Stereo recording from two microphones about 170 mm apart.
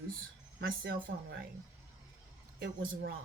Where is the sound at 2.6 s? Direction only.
90° right.